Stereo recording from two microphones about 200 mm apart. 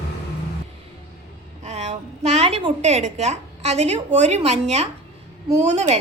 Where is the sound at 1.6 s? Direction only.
35° right (ahead or behind).